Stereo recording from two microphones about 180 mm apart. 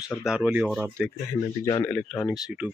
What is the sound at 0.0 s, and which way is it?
Speech, 5° right (ahead or behind).